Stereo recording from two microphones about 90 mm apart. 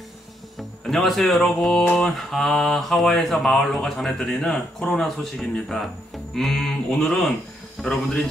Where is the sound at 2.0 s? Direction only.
5° left (ahead or behind).